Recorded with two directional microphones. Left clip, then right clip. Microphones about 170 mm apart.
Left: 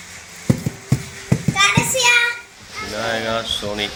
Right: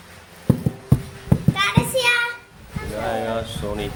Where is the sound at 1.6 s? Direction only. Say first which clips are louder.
Left 5 dB; 35° left (ahead or behind).